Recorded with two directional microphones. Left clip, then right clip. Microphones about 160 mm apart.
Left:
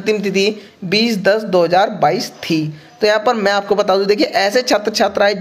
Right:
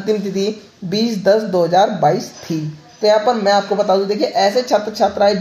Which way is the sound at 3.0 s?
30° left (ahead or behind).